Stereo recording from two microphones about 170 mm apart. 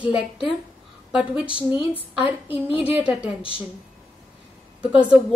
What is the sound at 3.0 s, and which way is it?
Speech, 10° right (ahead or behind).